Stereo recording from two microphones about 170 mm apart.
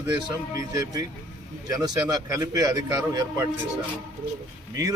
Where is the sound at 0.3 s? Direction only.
20° right (ahead or behind).